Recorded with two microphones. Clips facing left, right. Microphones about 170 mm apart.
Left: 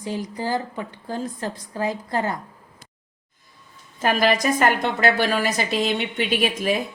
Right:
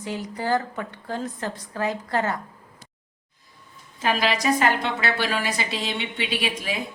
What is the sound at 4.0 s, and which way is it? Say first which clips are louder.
A woman's voice: left 4 dB; 50° left (ahead or behind).